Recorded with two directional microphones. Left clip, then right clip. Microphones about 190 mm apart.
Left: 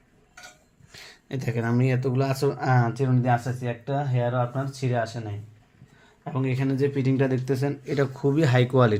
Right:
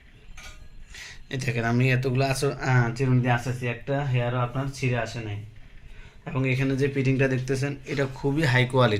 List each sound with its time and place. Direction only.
0.9 s speech: 50° left (ahead or behind)